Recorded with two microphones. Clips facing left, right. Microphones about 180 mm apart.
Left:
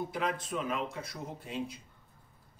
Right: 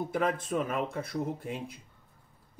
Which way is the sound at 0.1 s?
50° right (ahead or behind).